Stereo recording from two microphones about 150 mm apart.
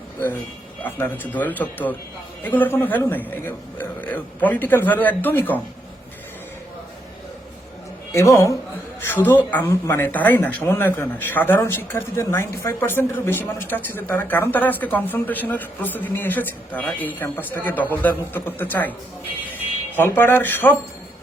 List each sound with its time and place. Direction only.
0.8 s speech: 15° left (ahead or behind)
8.1 s a man's voice: 20° left (ahead or behind)
20.0 s speech: 15° left (ahead or behind)